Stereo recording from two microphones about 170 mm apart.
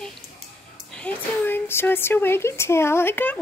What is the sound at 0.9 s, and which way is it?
A woman's voice, 10° left (ahead or behind).